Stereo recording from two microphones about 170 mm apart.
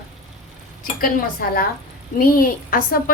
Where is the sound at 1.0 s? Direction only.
60° left (ahead or behind).